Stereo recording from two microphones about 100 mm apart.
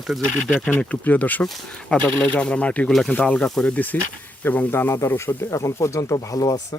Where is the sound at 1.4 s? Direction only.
5° left (ahead or behind).